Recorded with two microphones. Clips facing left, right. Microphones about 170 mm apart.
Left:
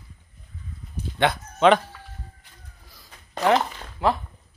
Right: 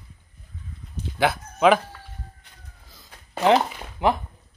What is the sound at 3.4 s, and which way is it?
Speech, 15° right (ahead or behind).